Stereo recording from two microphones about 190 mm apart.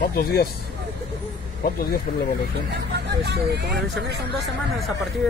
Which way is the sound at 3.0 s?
65° right (ahead or behind).